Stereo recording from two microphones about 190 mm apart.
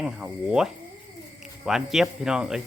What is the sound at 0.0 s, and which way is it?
Speech, 5° right (ahead or behind).